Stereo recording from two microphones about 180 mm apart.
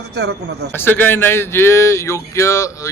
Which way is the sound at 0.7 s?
10° left (ahead or behind).